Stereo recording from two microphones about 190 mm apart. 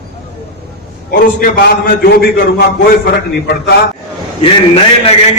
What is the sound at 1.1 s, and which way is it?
A man's voice, 50° left (ahead or behind).